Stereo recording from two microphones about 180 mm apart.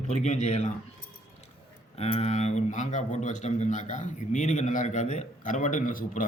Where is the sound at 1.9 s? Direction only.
35° left (ahead or behind).